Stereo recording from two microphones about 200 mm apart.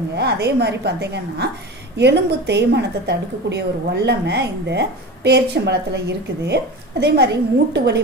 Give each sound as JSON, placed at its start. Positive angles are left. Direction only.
{"t": 0.1, "sound": "a woman's voice", "side_deg": -55}